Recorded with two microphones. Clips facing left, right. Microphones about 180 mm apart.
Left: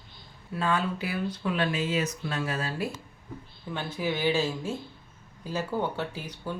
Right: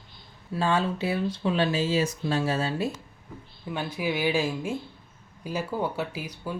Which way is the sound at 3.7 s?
10° right (ahead or behind).